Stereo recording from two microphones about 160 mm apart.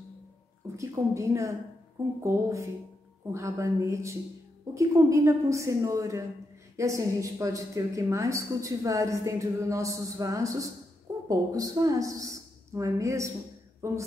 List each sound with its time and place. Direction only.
0.7 s a woman's voice: 20° right (ahead or behind)